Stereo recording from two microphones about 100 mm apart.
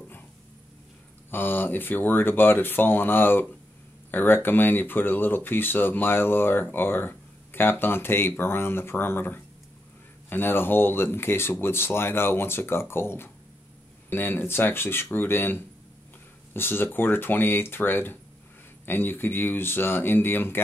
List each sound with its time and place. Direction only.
1.3 s speech: 20° left (ahead or behind)